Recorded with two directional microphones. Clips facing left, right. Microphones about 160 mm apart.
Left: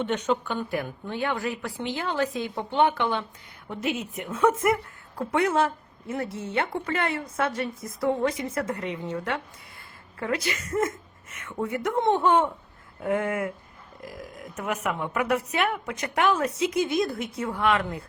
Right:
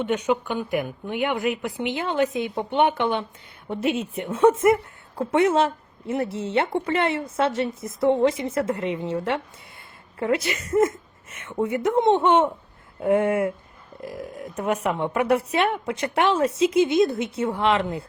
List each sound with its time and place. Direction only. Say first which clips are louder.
0.0 s a woman's voice: right 3 dB; 10° right (ahead or behind)